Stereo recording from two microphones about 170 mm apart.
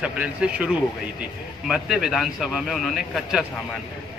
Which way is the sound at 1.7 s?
Centre (ahead or behind).